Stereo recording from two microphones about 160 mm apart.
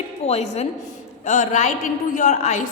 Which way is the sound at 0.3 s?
40° left (ahead or behind).